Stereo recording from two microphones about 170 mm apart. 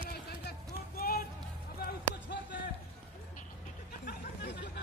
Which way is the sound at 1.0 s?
65° left (ahead or behind).